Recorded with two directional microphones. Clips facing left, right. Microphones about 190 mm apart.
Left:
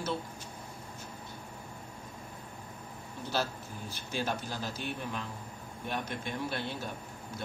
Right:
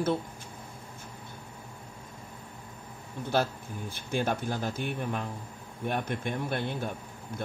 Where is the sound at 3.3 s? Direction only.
55° right (ahead or behind).